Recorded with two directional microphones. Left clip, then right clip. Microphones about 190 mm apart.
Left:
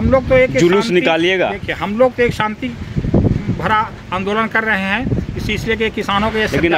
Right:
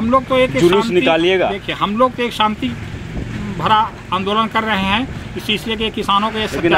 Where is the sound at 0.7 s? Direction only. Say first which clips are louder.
Even; 60° left (ahead or behind).